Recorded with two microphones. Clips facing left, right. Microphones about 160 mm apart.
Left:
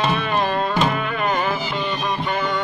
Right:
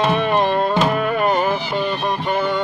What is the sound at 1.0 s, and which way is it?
Music, 45° right (ahead or behind).